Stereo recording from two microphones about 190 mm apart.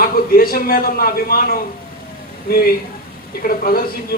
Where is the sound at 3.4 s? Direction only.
50° left (ahead or behind).